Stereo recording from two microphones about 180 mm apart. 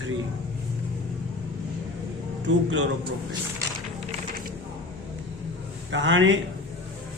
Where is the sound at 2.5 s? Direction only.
90° right.